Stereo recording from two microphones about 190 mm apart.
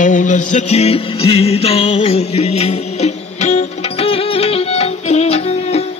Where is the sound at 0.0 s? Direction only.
40° left (ahead or behind).